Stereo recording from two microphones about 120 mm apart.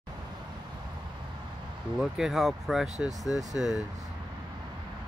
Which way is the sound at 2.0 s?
5° right (ahead or behind).